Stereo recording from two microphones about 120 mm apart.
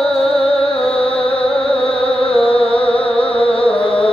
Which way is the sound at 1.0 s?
50° left (ahead or behind).